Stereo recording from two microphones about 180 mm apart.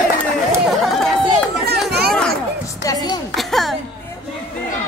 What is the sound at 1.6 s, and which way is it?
Chatter, 60° right (ahead or behind).